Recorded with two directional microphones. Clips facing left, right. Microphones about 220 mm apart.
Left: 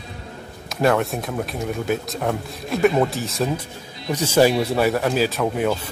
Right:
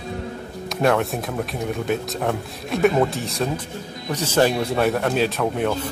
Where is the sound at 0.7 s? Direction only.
Centre (ahead or behind).